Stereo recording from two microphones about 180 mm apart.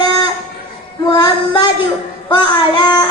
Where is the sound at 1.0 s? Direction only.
25° left (ahead or behind).